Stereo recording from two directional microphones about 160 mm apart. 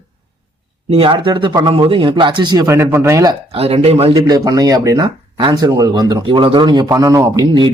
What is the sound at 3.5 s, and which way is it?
Speech, 40° right (ahead or behind).